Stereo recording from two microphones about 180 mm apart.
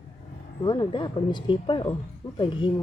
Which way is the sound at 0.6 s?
25° left (ahead or behind).